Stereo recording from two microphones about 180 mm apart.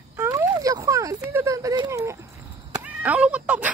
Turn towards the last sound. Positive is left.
turn(degrees=-10)  # may be behind; listen again after turning